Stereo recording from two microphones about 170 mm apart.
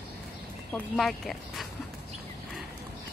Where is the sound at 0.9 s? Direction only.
Centre (ahead or behind).